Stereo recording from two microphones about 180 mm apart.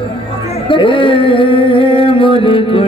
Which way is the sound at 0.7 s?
30° left (ahead or behind).